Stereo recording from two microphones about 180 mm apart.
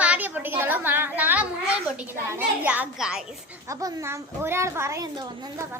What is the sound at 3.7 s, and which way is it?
A child's voice, 20° right (ahead or behind).